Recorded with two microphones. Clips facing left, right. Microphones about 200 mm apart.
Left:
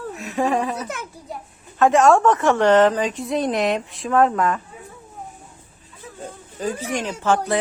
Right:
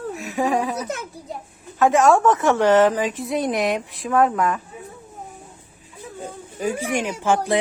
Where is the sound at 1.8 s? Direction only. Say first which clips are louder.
Left 1 dB; centre (ahead or behind).